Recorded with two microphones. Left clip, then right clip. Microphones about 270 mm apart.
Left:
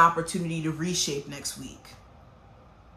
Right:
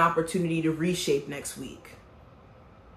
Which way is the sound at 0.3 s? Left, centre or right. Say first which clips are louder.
Right 5 dB; centre.